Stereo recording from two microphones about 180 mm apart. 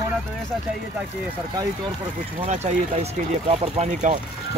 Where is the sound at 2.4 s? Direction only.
40° right (ahead or behind).